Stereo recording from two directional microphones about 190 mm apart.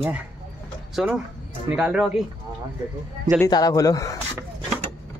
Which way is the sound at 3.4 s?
20° left (ahead or behind).